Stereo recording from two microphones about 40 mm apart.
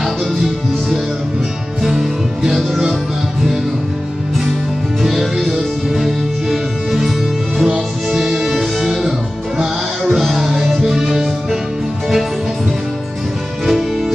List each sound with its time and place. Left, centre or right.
1.8 s music: centre
5.0 s music: centre
10.2 s music: centre